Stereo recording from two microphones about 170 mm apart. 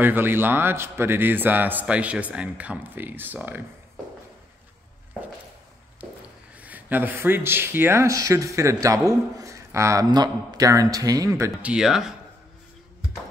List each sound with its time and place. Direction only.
0.0 s a man's voice: 10° right (ahead or behind)
6.6 s a man's voice: 10° right (ahead or behind)
11.6 s speech: 5° right (ahead or behind)